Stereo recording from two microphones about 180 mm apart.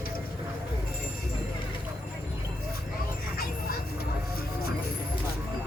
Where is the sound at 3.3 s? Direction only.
55° left (ahead or behind).